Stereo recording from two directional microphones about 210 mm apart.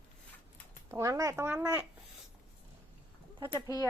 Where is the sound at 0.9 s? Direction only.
15° right (ahead or behind).